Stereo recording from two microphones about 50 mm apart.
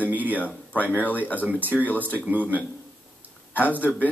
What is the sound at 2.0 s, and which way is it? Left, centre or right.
Speech, right.